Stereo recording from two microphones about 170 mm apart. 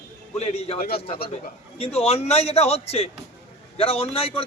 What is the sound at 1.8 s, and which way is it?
A man's voice, 35° left (ahead or behind).